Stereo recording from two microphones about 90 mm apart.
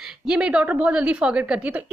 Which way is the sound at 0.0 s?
10° right (ahead or behind).